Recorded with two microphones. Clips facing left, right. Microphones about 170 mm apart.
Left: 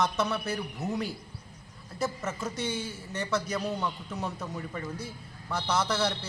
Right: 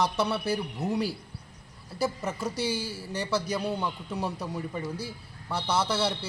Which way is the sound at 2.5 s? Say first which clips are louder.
Right 3 dB; 35° right (ahead or behind).